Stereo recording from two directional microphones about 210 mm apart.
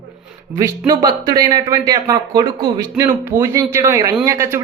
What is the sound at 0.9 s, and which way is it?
Speech, 20° right (ahead or behind).